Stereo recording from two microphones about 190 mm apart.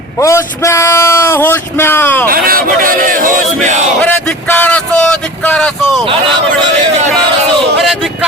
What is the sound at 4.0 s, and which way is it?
Speech, 5° left (ahead or behind).